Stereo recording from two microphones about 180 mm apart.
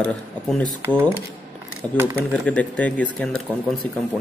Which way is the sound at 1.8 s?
20° right (ahead or behind).